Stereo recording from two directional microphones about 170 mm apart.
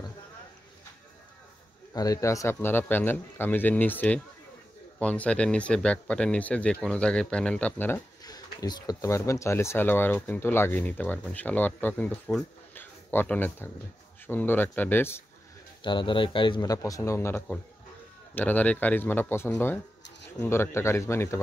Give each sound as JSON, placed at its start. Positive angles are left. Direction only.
{"t": 2.0, "sound": "speech", "side_deg": 20}
{"t": 8.2, "sound": "speech", "side_deg": 20}
{"t": 15.8, "sound": "speech", "side_deg": 30}